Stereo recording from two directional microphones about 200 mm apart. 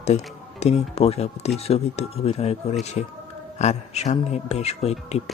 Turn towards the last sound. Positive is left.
turn(degrees=30)  # may be behind; listen again after turning